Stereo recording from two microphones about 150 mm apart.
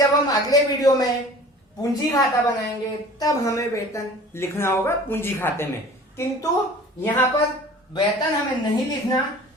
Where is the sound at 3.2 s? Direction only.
20° left (ahead or behind).